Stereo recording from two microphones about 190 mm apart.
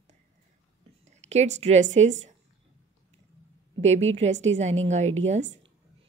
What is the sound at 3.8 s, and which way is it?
A woman's voice, 35° right (ahead or behind).